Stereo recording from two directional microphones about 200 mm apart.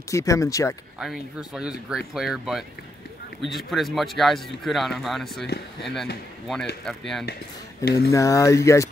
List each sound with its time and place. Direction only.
0.1 s speech: 15° left (ahead or behind)
0.9 s speech: 5° right (ahead or behind)
8.1 s speech: 15° left (ahead or behind)